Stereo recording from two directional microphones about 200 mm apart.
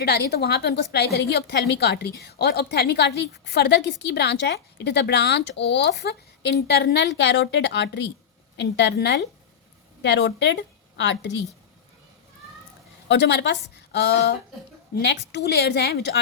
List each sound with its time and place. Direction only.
0.0 s a woman's voice: 55° left (ahead or behind)
13.1 s a woman's voice: 60° left (ahead or behind)